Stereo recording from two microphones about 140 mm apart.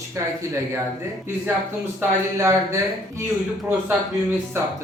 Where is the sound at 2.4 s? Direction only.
20° right (ahead or behind).